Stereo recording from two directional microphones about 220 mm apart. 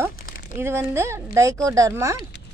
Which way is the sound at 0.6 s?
10° right (ahead or behind).